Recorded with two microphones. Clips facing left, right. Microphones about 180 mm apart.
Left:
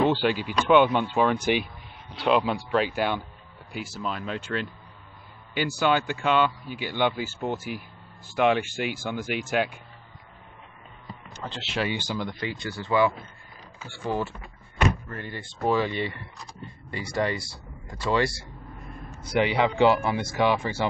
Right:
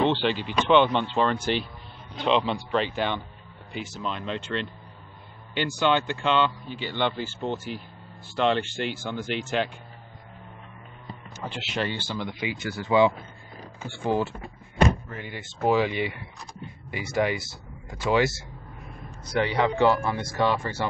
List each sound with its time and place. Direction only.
0.0 s speech: 10° left (ahead or behind)
11.6 s speech: centre (ahead or behind)
11.9 s speech: 10° left (ahead or behind)
12.4 s speech: 15° right (ahead or behind)
13.7 s speech: 50° right (ahead or behind)
15.0 s speech: 5° right (ahead or behind)
19.4 s speech: 15° left (ahead or behind)